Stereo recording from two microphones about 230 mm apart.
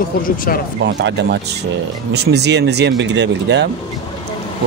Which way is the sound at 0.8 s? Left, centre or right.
Right.